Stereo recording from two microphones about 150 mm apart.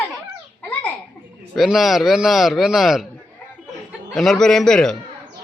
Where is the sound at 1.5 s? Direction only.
Centre (ahead or behind).